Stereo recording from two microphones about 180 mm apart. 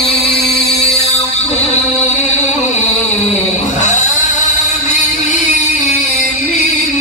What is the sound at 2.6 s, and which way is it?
Music, 40° left (ahead or behind).